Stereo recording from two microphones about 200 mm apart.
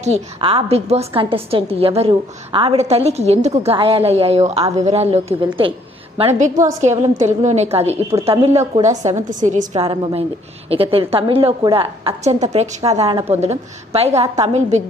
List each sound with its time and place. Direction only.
0.0 s a woman's voice: 30° right (ahead or behind)